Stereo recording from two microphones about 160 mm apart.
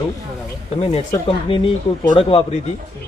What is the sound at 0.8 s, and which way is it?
Speech, 40° left (ahead or behind).